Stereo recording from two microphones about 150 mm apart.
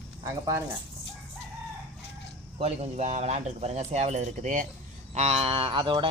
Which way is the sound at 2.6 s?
45° right (ahead or behind).